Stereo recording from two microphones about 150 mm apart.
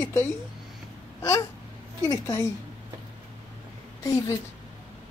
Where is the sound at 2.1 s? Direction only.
20° left (ahead or behind).